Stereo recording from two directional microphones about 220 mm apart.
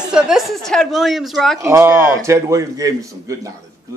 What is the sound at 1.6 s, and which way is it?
A man's voice, 10° right (ahead or behind).